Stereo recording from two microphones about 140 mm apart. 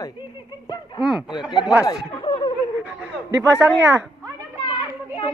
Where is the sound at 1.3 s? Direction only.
30° left (ahead or behind).